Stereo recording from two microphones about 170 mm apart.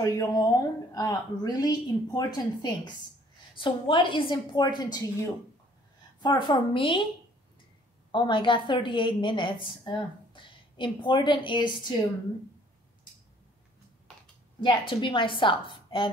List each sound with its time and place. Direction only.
0.0 s a woman's voice: 20° left (ahead or behind)
8.1 s a woman's voice: 30° left (ahead or behind)
14.6 s a woman's voice: 30° left (ahead or behind)